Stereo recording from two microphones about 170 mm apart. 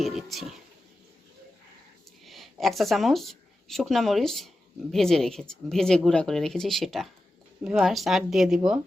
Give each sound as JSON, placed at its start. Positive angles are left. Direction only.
{"t": 0.0, "sound": "speech", "side_deg": 0}
{"t": 2.2, "sound": "speech", "side_deg": 0}